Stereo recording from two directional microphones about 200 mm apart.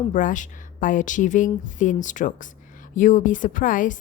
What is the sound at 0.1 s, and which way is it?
A woman's voice, 40° left (ahead or behind).